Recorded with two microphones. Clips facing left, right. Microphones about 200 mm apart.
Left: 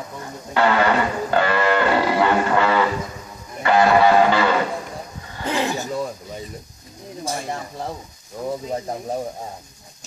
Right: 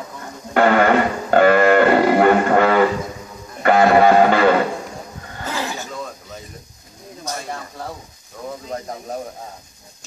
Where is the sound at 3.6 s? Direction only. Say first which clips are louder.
Right 3 dB; 50° right (ahead or behind).